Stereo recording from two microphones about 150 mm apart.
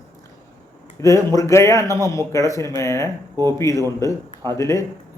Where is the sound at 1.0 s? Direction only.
20° left (ahead or behind).